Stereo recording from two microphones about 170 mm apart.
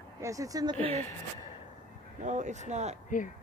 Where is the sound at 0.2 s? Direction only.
20° right (ahead or behind).